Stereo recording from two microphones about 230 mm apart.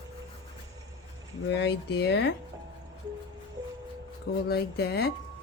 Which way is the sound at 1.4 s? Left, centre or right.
Left.